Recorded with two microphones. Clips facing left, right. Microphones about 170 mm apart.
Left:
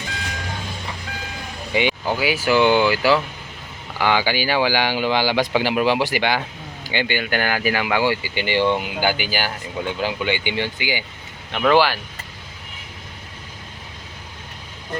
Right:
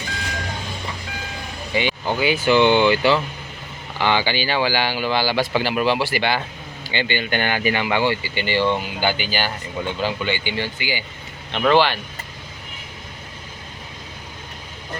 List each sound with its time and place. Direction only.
1.7 s vehicle: 15° left (ahead or behind)
2.1 s speech: 5° left (ahead or behind)